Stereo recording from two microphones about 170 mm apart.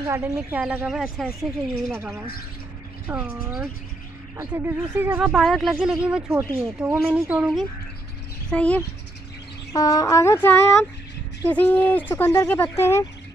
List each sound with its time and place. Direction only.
0.0 s speech: 15° right (ahead or behind)
8.5 s speech: 5° left (ahead or behind)
9.7 s speech: 20° left (ahead or behind)